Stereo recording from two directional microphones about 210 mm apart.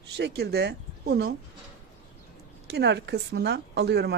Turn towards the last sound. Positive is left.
turn(degrees=-50)  # may be behind; listen again after turning